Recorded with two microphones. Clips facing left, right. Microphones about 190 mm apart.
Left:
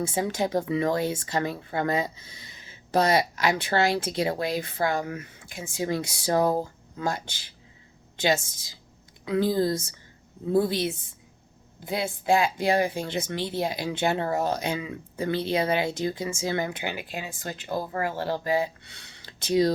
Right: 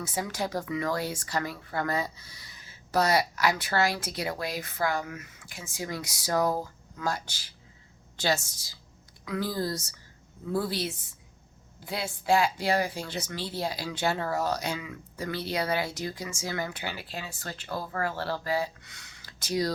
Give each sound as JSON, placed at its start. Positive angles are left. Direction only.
{"t": 0.0, "sound": "speech", "side_deg": 25}